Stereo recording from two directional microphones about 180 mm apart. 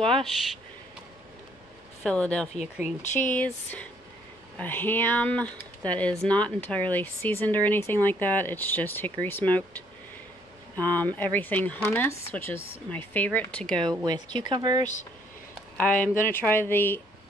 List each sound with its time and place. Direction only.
2.0 s speech: 5° left (ahead or behind)
3.0 s speech: 45° left (ahead or behind)
3.3 s speech: 10° left (ahead or behind)
10.8 s speech: 10° left (ahead or behind)
13.7 s speech: 25° right (ahead or behind)
15.8 s speech: 10° left (ahead or behind)